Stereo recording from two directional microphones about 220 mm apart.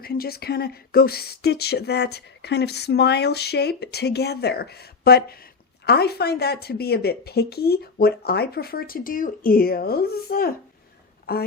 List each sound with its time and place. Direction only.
0.0 s speech: 45° left (ahead or behind)